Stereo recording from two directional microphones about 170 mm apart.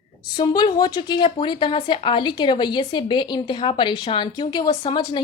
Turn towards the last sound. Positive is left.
turn(degrees=25)  # may be behind; listen again after turning